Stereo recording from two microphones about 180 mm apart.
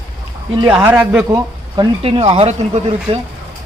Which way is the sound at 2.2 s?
35° right (ahead or behind).